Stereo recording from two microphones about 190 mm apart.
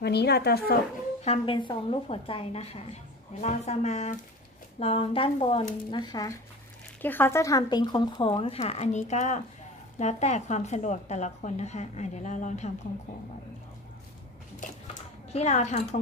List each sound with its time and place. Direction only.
0.0 s a woman's voice: 60° left (ahead or behind)
1.2 s a woman's voice: 30° left (ahead or behind)
15.3 s a woman's voice: 35° left (ahead or behind)